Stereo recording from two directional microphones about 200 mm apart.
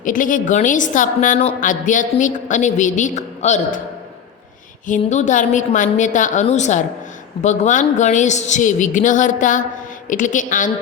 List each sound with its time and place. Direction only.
0.0 s a woman's voice: 40° left (ahead or behind)
4.9 s a woman's voice: 35° left (ahead or behind)